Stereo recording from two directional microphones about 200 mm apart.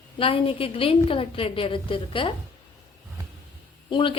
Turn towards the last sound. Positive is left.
turn(degrees=25)  # may be behind; listen again after turning